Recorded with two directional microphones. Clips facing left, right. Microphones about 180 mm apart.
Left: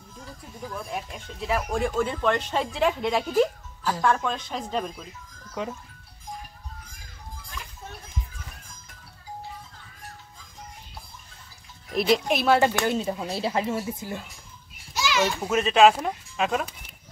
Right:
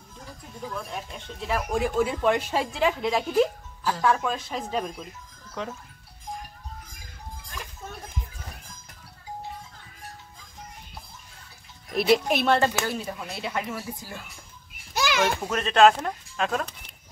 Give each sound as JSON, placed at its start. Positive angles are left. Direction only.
{"t": 0.8, "sound": "speech", "side_deg": 5}
{"t": 5.6, "sound": "speech", "side_deg": 10}
{"t": 11.9, "sound": "speech", "side_deg": 0}
{"t": 12.8, "sound": "speech", "side_deg": 25}
{"t": 15.0, "sound": "children playing", "side_deg": -55}
{"t": 15.4, "sound": "speech", "side_deg": 5}